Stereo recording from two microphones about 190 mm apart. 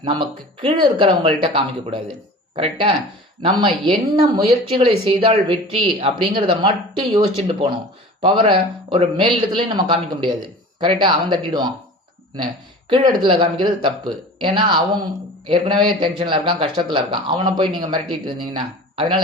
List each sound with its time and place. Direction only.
0.0 s speech: 25° right (ahead or behind)
12.9 s speech: 25° right (ahead or behind)